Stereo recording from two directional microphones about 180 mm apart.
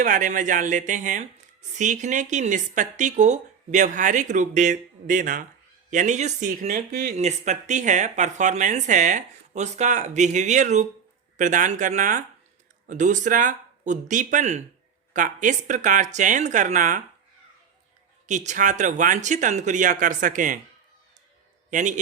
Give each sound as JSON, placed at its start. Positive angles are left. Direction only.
{"t": 0.0, "sound": "speech", "side_deg": -45}
{"t": 7.2, "sound": "speech", "side_deg": -40}
{"t": 18.3, "sound": "speech", "side_deg": -40}
{"t": 21.7, "sound": "speech", "side_deg": -45}